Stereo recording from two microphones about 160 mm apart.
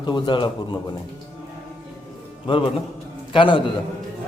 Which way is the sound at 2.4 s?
30° left (ahead or behind).